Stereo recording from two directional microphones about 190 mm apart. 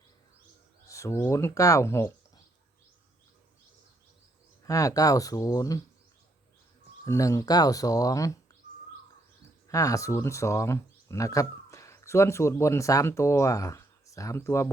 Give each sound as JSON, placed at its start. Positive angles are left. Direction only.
{"t": 0.9, "sound": "speech", "side_deg": 15}
{"t": 4.6, "sound": "speech", "side_deg": 20}
{"t": 7.0, "sound": "speech", "side_deg": 15}
{"t": 9.6, "sound": "speech", "side_deg": 15}